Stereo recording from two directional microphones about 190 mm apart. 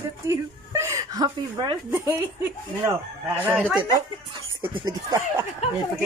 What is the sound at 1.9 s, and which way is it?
Chicken, 10° right (ahead or behind).